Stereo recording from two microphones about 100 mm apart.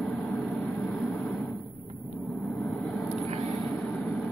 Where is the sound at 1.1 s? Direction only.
5° left (ahead or behind).